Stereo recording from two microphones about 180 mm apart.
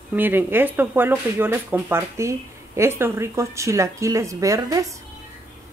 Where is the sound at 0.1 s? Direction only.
10° right (ahead or behind).